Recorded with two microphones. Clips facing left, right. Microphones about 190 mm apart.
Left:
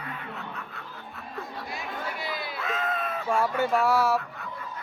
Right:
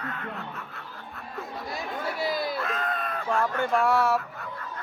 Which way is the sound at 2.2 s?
40° right (ahead or behind).